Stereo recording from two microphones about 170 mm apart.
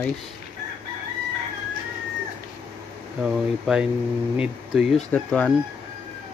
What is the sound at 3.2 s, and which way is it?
Speech, 5° right (ahead or behind).